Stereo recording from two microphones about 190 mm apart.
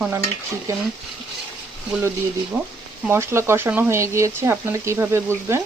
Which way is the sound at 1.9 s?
5° right (ahead or behind).